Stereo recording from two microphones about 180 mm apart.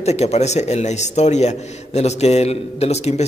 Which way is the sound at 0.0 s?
35° left (ahead or behind).